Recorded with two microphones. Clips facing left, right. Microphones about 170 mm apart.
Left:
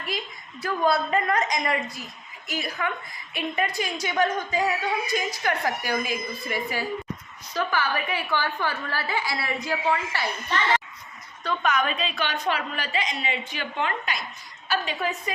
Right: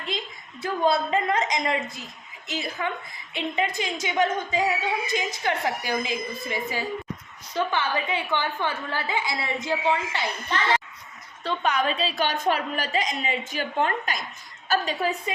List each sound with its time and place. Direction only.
0.1 s a woman's voice: 25° right (ahead or behind)
11.4 s a woman's voice: 30° right (ahead or behind)